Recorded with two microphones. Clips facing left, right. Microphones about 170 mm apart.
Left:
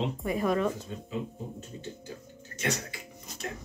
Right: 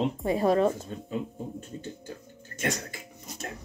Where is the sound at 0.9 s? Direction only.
45° right (ahead or behind).